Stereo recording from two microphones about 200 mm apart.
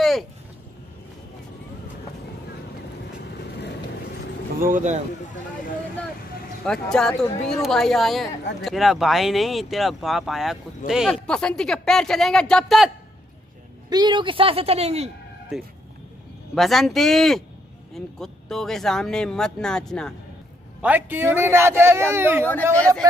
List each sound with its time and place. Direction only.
4.6 s speech: 40° right (ahead or behind)
5.2 s a sound: 40° left (ahead or behind)
6.6 s speech: 5° left (ahead or behind)
13.8 s a woman's voice: 20° right (ahead or behind)
15.5 s speech: centre (ahead or behind)
20.8 s speech: 10° right (ahead or behind)
22.4 s speech: 5° left (ahead or behind)